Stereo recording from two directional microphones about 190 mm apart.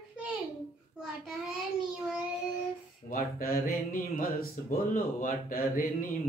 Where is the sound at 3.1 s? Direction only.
50° left (ahead or behind).